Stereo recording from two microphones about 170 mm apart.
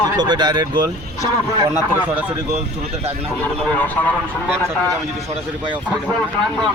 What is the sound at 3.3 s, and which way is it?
Speech, 10° left (ahead or behind).